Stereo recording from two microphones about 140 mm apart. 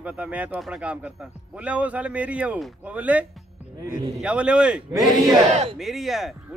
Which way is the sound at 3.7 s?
25° right (ahead or behind).